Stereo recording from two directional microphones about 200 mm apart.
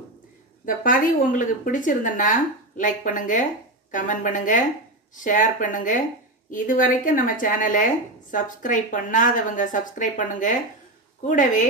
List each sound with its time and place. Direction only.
0.7 s a woman's voice: 45° left (ahead or behind)